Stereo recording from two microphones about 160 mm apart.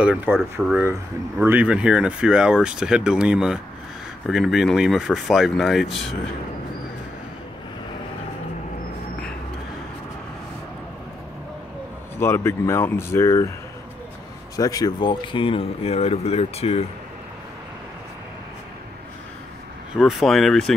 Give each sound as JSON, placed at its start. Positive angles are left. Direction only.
{"t": 0.0, "sound": "speech", "side_deg": -10}
{"t": 1.4, "sound": "speech", "side_deg": -10}
{"t": 12.2, "sound": "speech", "side_deg": 15}
{"t": 14.6, "sound": "speech", "side_deg": 25}
{"t": 20.0, "sound": "speech", "side_deg": 0}